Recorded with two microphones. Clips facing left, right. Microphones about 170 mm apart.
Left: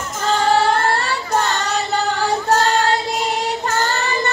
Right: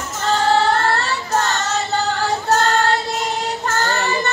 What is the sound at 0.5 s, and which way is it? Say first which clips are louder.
Child singing: even; 15° left (ahead or behind).